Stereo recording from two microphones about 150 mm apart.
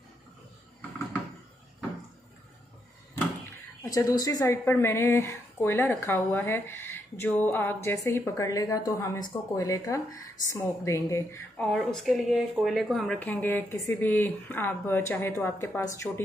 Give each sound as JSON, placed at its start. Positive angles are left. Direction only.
{"t": 3.8, "sound": "a woman's voice", "side_deg": 25}
{"t": 11.6, "sound": "a woman's voice", "side_deg": 5}